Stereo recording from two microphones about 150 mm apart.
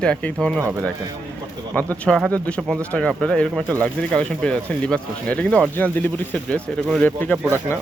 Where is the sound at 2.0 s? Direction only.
5° left (ahead or behind).